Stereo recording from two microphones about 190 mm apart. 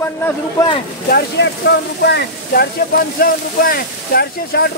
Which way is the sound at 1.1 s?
60° left (ahead or behind).